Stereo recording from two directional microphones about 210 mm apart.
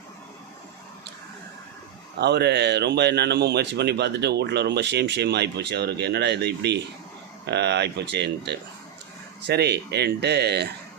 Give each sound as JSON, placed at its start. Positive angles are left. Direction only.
{"t": 2.2, "sound": "speech", "side_deg": -50}